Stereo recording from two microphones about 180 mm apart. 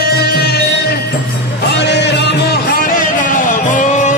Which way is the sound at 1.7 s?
70° left (ahead or behind).